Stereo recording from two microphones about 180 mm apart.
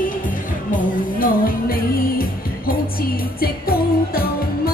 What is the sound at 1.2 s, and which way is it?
Music, 55° left (ahead or behind).